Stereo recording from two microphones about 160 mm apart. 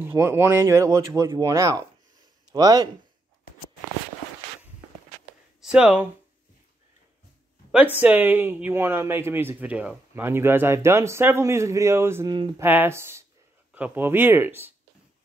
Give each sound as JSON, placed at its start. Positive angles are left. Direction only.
{"t": 0.0, "sound": "speech", "side_deg": -15}
{"t": 5.6, "sound": "speech", "side_deg": -5}
{"t": 7.7, "sound": "speech", "side_deg": -10}